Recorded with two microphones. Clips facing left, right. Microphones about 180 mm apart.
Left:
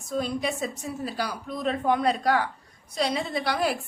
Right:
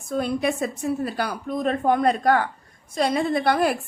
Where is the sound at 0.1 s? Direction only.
55° right (ahead or behind).